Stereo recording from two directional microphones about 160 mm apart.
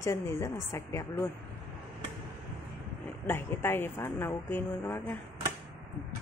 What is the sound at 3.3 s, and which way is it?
Speech, 15° left (ahead or behind).